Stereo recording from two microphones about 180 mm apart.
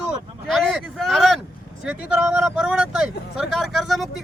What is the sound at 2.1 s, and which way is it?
Vehicle, 5° right (ahead or behind).